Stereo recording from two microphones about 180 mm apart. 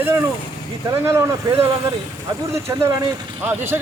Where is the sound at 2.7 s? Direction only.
15° right (ahead or behind).